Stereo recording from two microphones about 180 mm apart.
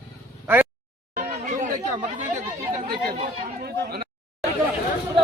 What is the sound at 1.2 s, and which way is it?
Chatter, 45° right (ahead or behind).